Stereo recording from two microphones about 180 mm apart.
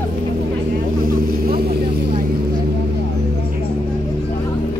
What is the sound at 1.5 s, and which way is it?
Vehicle, 55° right (ahead or behind).